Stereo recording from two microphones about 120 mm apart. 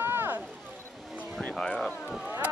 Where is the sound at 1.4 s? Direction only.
5° left (ahead or behind).